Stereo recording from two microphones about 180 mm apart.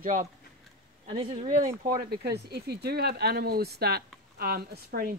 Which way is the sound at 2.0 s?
60° right (ahead or behind).